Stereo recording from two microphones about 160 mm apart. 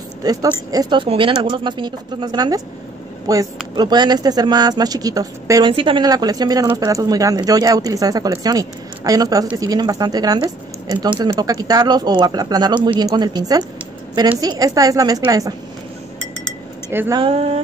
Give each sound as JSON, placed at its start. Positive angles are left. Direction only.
{"t": 0.2, "sound": "speech", "side_deg": -25}
{"t": 17.1, "sound": "speech", "side_deg": -35}